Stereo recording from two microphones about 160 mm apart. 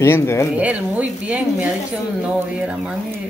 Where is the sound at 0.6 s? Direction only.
10° right (ahead or behind).